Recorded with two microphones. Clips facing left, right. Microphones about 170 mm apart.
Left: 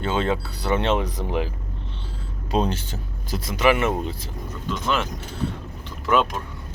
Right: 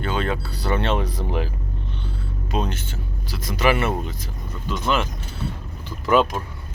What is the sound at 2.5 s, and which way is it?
Speech, 35° left (ahead or behind).